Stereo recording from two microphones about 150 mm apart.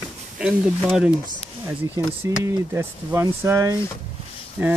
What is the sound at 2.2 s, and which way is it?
Speech, 15° right (ahead or behind).